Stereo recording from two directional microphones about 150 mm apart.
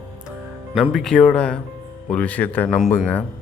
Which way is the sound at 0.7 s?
Centre (ahead or behind).